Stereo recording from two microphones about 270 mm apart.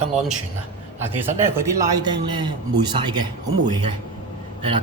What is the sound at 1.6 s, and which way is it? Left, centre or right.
A man's voice, centre.